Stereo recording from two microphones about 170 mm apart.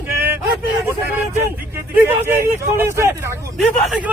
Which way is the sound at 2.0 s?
15° right (ahead or behind).